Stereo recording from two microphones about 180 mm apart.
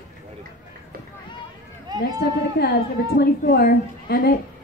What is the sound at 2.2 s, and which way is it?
A woman's voice, 60° left (ahead or behind).